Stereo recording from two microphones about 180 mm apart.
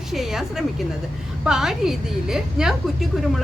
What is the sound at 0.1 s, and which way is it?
A woman's voice, centre (ahead or behind).